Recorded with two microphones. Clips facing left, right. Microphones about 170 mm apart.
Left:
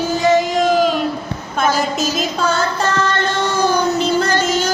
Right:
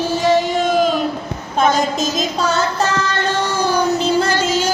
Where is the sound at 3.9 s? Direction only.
35° right (ahead or behind).